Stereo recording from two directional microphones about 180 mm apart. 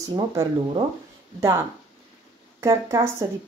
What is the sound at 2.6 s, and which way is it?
Speech, 15° right (ahead or behind).